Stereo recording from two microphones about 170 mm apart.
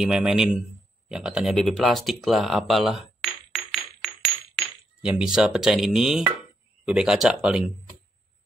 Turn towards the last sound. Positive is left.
turn(degrees=-5)  # may be behind; listen again after turning